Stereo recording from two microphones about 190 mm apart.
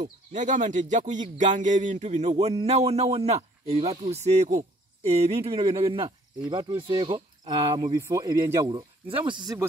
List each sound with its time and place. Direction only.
0.0 s speech: 40° right (ahead or behind); by 9.7 s 20° right (ahead or behind)